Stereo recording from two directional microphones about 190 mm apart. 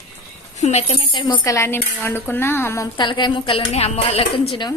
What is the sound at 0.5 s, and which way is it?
Speech, 35° left (ahead or behind).